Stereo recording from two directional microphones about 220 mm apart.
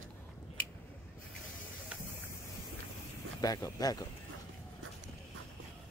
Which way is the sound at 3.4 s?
15° left (ahead or behind).